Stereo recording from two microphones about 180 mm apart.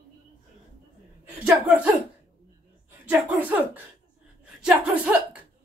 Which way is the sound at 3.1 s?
10° right (ahead or behind).